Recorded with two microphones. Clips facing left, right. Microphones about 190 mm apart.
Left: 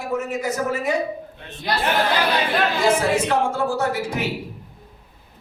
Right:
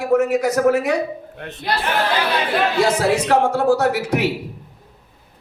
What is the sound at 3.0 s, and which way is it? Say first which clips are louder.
A man's voice: right 3 dB; 75° right (ahead or behind).